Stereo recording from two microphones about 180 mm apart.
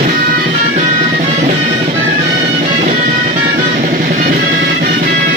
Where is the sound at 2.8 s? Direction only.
45° right (ahead or behind).